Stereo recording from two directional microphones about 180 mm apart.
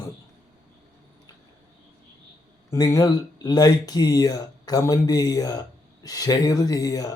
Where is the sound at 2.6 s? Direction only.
20° left (ahead or behind).